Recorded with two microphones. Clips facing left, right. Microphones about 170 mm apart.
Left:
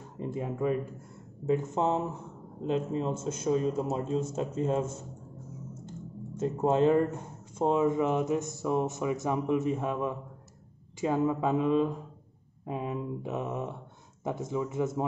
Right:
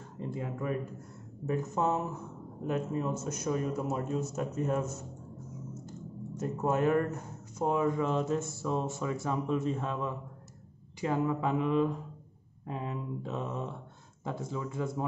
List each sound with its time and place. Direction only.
0.2 s speech: 20° left (ahead or behind)